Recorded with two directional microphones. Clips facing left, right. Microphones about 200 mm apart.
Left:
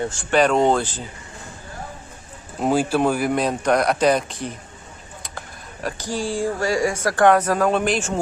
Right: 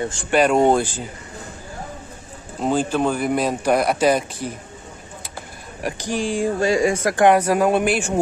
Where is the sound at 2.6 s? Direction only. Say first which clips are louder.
Left 1 dB; 10° left (ahead or behind).